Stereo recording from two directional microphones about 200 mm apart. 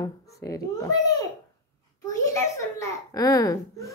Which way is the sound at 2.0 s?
15° left (ahead or behind).